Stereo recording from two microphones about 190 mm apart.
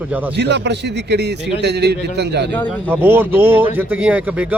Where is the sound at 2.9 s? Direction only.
10° right (ahead or behind).